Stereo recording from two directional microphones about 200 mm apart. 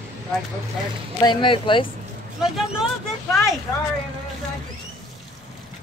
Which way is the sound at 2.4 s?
Centre (ahead or behind).